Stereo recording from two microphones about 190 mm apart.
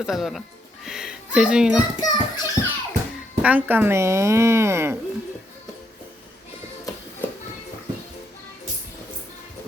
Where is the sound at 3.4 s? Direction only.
10° right (ahead or behind).